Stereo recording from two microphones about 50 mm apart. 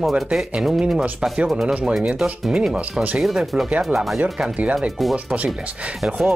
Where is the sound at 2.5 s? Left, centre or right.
Centre.